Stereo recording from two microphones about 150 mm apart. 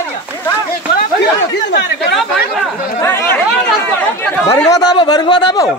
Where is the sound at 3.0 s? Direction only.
15° left (ahead or behind).